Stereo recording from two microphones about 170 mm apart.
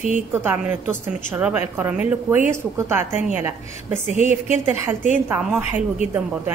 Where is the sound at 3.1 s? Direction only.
40° left (ahead or behind).